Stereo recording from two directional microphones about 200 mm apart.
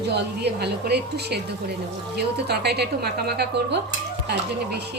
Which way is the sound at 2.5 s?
55° right (ahead or behind).